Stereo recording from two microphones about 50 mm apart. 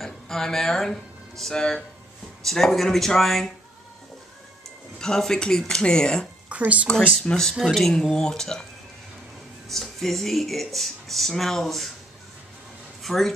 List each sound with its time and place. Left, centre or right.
0.0 s speech: centre
4.9 s speech: centre
6.5 s speech: right
7.2 s speech: centre
9.7 s speech: centre
13.0 s speech: centre